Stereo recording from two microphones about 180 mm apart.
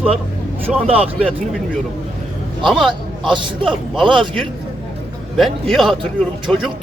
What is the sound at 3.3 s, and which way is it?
Speech, 25° right (ahead or behind).